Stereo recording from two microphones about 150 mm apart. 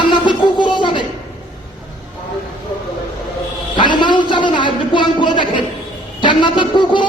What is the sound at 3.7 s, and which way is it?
Speech, 30° left (ahead or behind).